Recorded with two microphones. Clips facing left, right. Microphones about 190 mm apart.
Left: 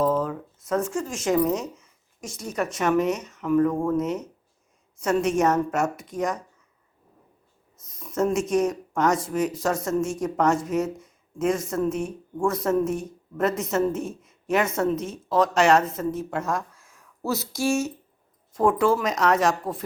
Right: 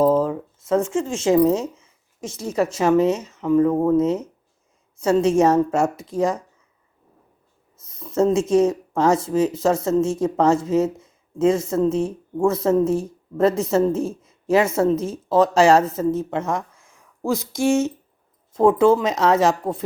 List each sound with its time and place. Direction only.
0.0 s speech: 30° right (ahead or behind)
7.9 s a woman's voice: 30° right (ahead or behind)